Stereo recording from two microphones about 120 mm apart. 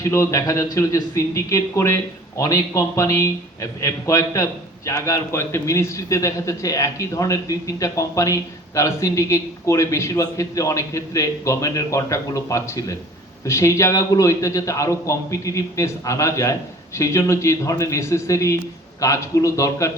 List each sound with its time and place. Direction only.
0.0 s a man's voice: 25° left (ahead or behind)